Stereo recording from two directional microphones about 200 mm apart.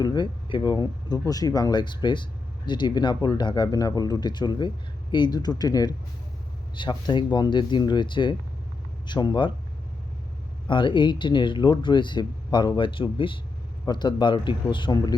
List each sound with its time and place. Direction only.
0.0 s speech: 20° left (ahead or behind)
10.7 s speech: 25° left (ahead or behind)